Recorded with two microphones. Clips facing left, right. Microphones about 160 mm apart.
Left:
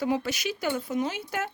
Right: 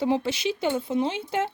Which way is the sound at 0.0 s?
25° right (ahead or behind).